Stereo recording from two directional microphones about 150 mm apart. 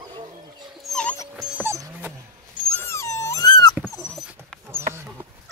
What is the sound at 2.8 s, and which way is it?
Dog, 20° left (ahead or behind).